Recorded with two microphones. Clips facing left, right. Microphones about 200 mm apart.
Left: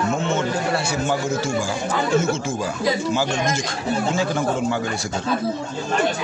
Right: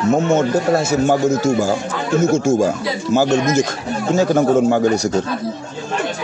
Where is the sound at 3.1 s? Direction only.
40° right (ahead or behind).